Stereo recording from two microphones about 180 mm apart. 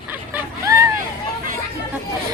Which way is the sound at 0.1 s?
15° right (ahead or behind).